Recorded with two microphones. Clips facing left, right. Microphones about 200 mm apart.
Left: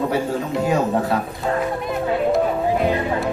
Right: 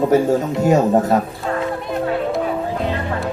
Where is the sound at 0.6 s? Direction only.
45° right (ahead or behind).